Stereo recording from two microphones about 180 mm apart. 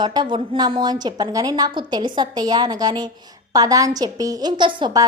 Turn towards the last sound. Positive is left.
turn(degrees=-25)  # may be behind; listen again after turning